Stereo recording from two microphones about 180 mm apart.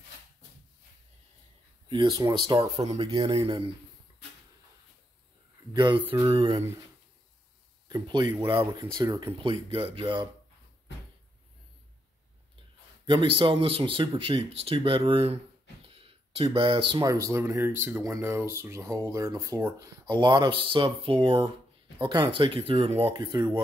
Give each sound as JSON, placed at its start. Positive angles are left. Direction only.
{"t": 1.9, "sound": "speech", "side_deg": -25}
{"t": 5.7, "sound": "speech", "side_deg": -25}
{"t": 7.9, "sound": "speech", "side_deg": -25}
{"t": 13.0, "sound": "a man's voice", "side_deg": -30}